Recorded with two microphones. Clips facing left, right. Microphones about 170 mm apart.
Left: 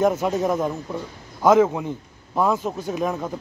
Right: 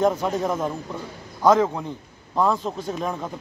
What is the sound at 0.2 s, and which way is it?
Speech, 10° left (ahead or behind).